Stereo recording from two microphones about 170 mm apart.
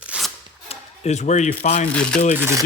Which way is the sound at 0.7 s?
40° left (ahead or behind).